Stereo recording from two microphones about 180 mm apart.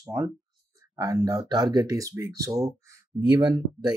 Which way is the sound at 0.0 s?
20° right (ahead or behind).